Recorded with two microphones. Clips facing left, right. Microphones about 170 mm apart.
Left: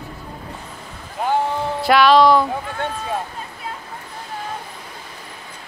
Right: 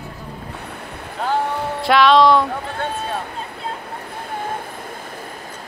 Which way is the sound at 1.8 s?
Centre (ahead or behind).